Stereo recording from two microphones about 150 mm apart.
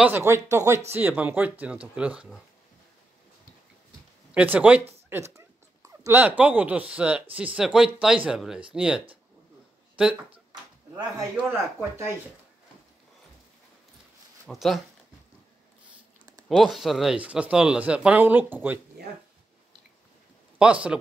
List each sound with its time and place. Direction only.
0.0 s speech: 15° right (ahead or behind)
4.3 s speech: 10° right (ahead or behind)
14.5 s speech: centre (ahead or behind)
16.4 s speech: centre (ahead or behind)
20.9 s speech: 5° right (ahead or behind)